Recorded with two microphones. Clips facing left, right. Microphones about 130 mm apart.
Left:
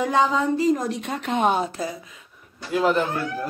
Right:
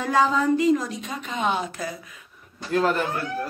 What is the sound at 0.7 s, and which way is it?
Speech, 65° left (ahead or behind).